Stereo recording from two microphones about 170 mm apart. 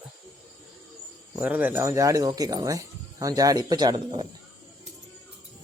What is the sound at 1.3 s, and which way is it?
Speech, 10° right (ahead or behind).